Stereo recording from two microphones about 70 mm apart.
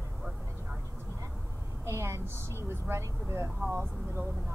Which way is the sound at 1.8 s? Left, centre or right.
Right.